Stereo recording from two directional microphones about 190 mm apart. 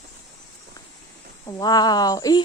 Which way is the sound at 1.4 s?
20° left (ahead or behind).